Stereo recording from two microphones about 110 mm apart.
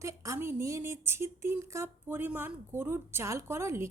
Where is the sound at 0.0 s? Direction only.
30° right (ahead or behind).